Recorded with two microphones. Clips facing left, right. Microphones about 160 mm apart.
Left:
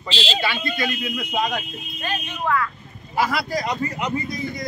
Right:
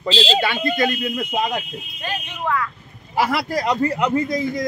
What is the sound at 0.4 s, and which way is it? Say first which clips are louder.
Speech: right 5 dB; 50° right (ahead or behind).